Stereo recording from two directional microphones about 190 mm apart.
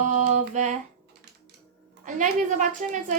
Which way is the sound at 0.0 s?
40° right (ahead or behind).